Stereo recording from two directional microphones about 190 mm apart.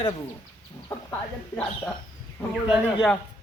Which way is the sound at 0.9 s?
10° left (ahead or behind).